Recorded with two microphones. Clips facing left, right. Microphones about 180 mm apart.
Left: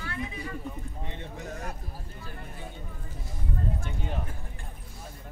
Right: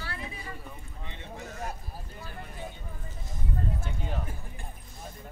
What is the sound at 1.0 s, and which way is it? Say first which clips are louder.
Speech: even; 50° left (ahead or behind).